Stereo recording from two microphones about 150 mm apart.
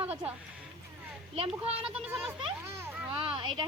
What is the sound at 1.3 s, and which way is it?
Speech, 40° right (ahead or behind).